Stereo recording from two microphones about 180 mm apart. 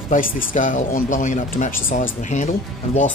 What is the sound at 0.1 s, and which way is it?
Speech, 50° left (ahead or behind).